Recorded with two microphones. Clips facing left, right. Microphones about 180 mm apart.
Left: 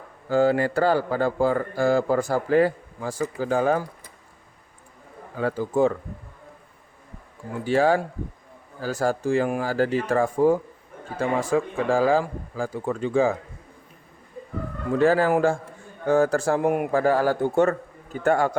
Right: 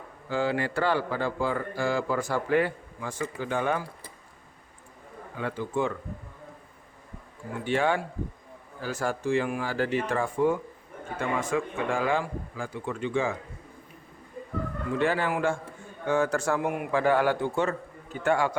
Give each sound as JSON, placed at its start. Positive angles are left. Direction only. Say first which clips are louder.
{"t": 0.3, "sound": "a man's voice", "louder": "left 7 dB", "side_deg": 45}
{"t": 5.4, "sound": "a man's voice", "louder": "left 7 dB", "side_deg": 40}
{"t": 7.6, "sound": "a man's voice", "louder": "left 6 dB", "side_deg": 35}
{"t": 14.9, "sound": "a man's voice", "louder": "left 8 dB", "side_deg": 40}
{"t": 16.7, "sound": "a man's voice", "louder": "left 3 dB", "side_deg": 45}